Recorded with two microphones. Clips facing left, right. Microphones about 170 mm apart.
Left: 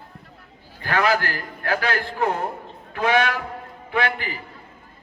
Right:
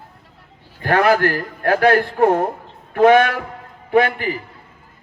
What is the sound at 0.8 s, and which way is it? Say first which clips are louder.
A man's voice: right 6 dB; 50° right (ahead or behind).